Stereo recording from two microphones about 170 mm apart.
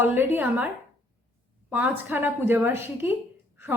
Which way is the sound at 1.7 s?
10° right (ahead or behind).